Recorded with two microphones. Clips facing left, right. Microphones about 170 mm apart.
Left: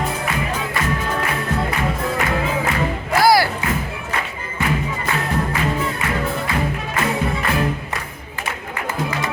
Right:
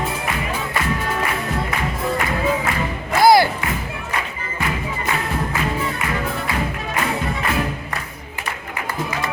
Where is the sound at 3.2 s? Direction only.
20° right (ahead or behind).